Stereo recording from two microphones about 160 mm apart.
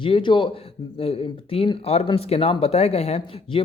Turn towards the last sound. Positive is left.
turn(degrees=40)  # may be behind; listen again after turning